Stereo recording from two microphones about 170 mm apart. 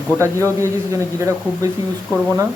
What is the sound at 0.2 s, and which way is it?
A man's voice, 15° right (ahead or behind).